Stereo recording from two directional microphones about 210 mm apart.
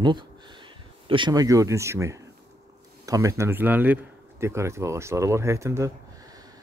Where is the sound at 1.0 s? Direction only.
25° right (ahead or behind).